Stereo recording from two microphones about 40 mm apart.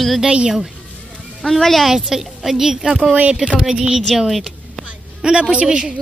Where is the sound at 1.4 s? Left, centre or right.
Centre.